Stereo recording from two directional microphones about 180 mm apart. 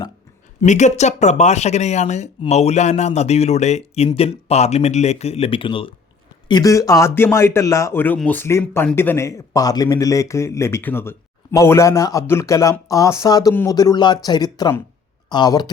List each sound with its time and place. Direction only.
0.6 s speech: 40° left (ahead or behind); by 15.7 s 25° left (ahead or behind)